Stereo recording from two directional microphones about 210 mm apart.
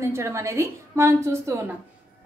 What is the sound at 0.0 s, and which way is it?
A woman's voice, 10° right (ahead or behind).